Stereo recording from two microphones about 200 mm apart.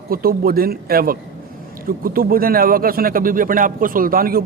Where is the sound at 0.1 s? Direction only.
50° right (ahead or behind).